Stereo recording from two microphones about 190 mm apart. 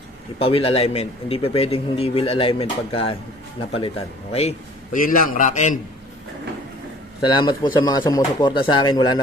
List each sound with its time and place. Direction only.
0.4 s a man's voice: 30° left (ahead or behind)
5.0 s a man's voice: 45° left (ahead or behind)
7.2 s speech: 25° left (ahead or behind)